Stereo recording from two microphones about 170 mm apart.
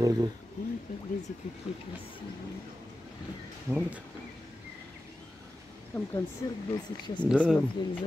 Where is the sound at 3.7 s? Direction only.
10° right (ahead or behind).